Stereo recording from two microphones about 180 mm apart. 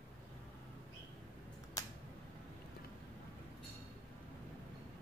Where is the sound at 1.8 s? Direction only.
20° left (ahead or behind).